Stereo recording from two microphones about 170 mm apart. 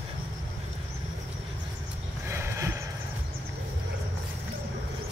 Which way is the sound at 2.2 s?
15° right (ahead or behind).